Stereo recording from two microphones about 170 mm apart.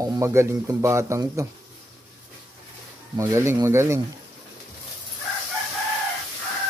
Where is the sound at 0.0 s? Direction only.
20° right (ahead or behind).